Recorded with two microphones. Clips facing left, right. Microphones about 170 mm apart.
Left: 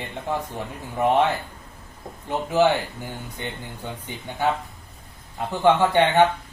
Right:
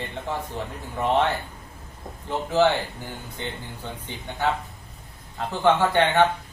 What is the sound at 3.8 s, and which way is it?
Speech, 10° left (ahead or behind).